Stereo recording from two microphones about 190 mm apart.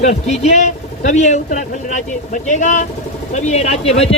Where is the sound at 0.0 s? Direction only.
35° left (ahead or behind).